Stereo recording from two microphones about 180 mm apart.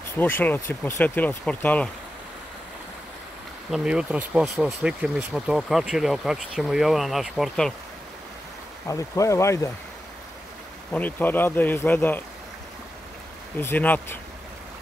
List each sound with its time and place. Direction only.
0.2 s speech: 10° left (ahead or behind)
3.7 s speech: 5° right (ahead or behind)
8.8 s speech: 15° left (ahead or behind)
10.9 s speech: 10° left (ahead or behind)
13.6 s speech: 10° left (ahead or behind)